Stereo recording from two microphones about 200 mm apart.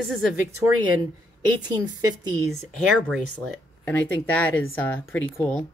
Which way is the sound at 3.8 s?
10° left (ahead or behind).